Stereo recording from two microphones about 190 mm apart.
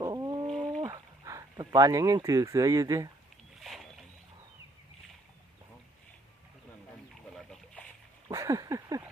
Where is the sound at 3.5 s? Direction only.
Centre (ahead or behind).